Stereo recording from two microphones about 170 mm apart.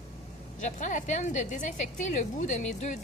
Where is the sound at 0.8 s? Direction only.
45° left (ahead or behind).